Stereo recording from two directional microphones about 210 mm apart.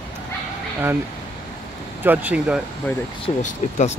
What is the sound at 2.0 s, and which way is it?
Speech, 10° right (ahead or behind).